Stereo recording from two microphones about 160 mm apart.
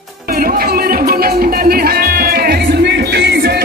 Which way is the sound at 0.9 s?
65° right (ahead or behind).